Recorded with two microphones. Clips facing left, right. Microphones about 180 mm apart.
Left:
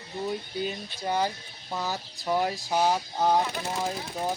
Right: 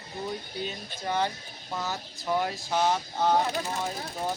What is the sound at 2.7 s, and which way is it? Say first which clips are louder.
Speech: even; 10° left (ahead or behind).